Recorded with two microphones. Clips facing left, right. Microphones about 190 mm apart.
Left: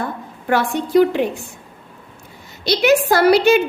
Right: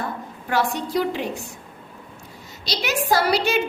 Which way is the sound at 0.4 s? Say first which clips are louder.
Left 4 dB; 55° left (ahead or behind).